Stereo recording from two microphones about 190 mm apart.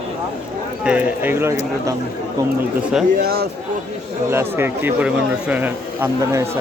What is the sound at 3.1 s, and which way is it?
Speech, 55° right (ahead or behind).